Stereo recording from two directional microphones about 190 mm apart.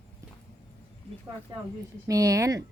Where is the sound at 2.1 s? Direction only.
15° right (ahead or behind).